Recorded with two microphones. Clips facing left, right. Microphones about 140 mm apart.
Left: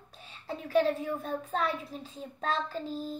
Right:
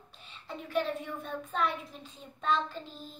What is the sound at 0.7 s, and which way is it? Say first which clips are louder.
A child's voice: left 6 dB; 35° left (ahead or behind).